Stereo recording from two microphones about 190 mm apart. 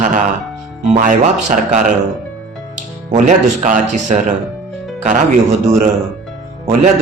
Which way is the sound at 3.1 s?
40° right (ahead or behind).